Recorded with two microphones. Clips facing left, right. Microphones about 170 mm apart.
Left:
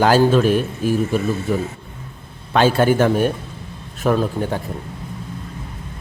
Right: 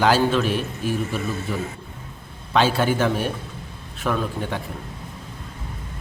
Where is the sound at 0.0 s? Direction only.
45° left (ahead or behind).